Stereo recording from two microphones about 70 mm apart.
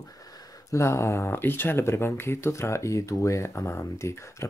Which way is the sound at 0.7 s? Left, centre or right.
Left.